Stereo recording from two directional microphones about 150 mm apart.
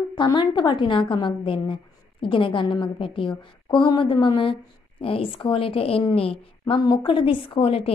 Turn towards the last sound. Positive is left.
turn(degrees=40)  # may be behind; listen again after turning